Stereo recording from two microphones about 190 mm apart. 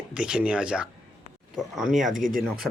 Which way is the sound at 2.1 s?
45° right (ahead or behind).